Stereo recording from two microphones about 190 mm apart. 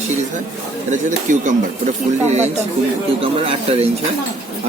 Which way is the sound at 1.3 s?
45° right (ahead or behind).